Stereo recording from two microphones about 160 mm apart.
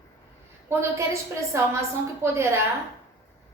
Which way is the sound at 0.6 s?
15° right (ahead or behind).